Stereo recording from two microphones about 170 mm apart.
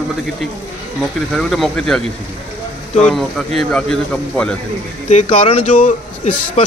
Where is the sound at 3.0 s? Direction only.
5° left (ahead or behind).